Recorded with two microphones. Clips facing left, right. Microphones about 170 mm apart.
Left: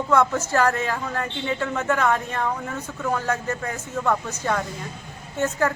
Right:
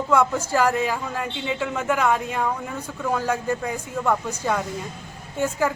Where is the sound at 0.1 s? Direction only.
10° right (ahead or behind).